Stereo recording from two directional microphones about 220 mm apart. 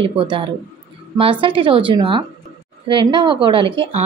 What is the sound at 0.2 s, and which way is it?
A woman's voice, 20° right (ahead or behind).